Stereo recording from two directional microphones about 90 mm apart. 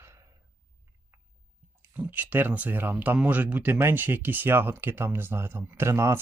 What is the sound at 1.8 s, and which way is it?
Speech, 20° right (ahead or behind).